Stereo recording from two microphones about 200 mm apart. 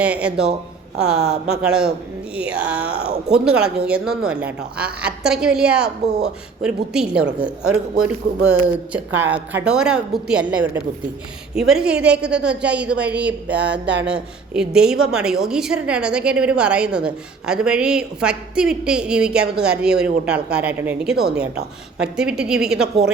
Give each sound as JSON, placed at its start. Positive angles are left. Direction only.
{"t": 0.0, "sound": "a woman's voice", "side_deg": -5}
{"t": 13.5, "sound": "a sound", "side_deg": -60}
{"t": 14.1, "sound": "a woman's voice", "side_deg": -5}